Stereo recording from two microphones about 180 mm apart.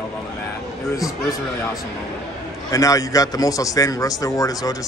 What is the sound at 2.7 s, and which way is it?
A man's voice, 20° left (ahead or behind).